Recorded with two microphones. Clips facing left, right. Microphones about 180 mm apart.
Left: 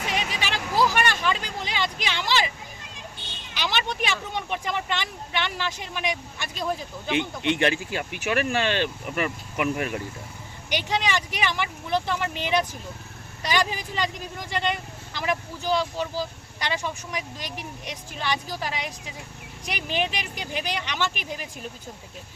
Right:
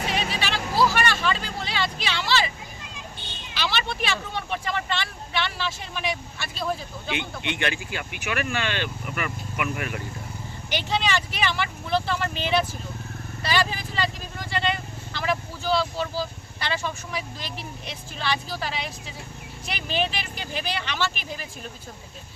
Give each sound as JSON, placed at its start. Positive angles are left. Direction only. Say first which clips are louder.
{"t": 0.0, "sound": "vehicle", "louder": "right 1 dB", "side_deg": 15}
{"t": 3.5, "sound": "speech", "louder": "even", "side_deg": 15}
{"t": 7.1, "sound": "speech", "louder": "left 6 dB", "side_deg": 35}
{"t": 10.7, "sound": "speech", "louder": "even", "side_deg": 15}